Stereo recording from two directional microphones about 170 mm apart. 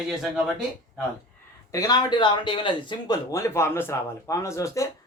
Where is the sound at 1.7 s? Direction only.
20° left (ahead or behind).